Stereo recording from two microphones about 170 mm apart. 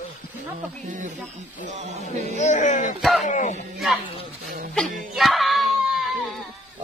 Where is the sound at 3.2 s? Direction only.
45° left (ahead or behind).